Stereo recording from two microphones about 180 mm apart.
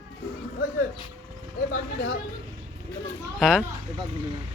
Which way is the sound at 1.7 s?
65° left (ahead or behind).